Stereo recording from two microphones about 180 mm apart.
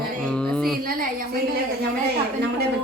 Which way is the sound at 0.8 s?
55° right (ahead or behind).